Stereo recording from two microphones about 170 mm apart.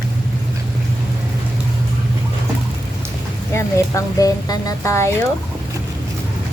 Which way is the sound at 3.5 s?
20° left (ahead or behind).